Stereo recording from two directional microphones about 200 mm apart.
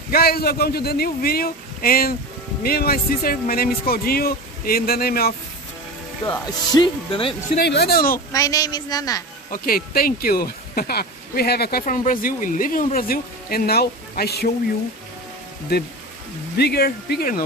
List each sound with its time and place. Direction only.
0.1 s speech: 50° left (ahead or behind)
6.3 s speech: 20° left (ahead or behind)
7.6 s speech: 55° left (ahead or behind)
8.3 s a woman's voice: 15° left (ahead or behind)
9.5 s speech: 45° left (ahead or behind)
15.7 s speech: 55° left (ahead or behind)